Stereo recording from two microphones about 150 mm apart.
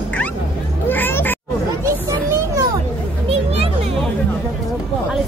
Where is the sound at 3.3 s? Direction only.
40° right (ahead or behind).